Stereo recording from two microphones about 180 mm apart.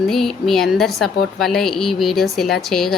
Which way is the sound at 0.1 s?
Centre (ahead or behind).